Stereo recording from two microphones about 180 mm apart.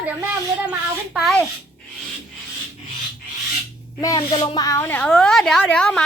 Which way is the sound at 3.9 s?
25° left (ahead or behind).